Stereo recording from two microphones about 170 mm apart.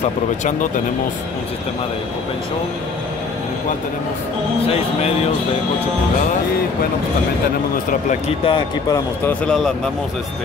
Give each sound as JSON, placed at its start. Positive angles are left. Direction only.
{"t": 8.1, "sound": "speech", "side_deg": 35}
{"t": 8.9, "sound": "speech", "side_deg": 10}